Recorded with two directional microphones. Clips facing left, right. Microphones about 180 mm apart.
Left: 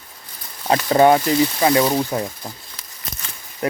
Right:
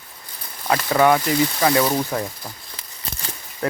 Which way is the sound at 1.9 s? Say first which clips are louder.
Left 2 dB; 15° left (ahead or behind).